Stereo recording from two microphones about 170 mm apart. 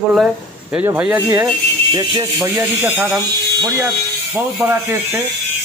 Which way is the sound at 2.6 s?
5° right (ahead or behind).